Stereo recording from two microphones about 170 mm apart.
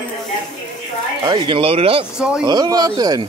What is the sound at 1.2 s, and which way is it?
Speech, 30° right (ahead or behind).